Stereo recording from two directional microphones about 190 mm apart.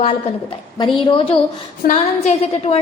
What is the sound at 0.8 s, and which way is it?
Speech, 25° left (ahead or behind).